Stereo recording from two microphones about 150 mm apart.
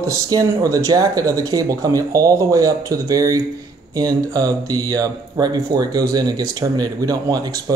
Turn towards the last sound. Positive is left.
turn(degrees=-25)  # may be behind; listen again after turning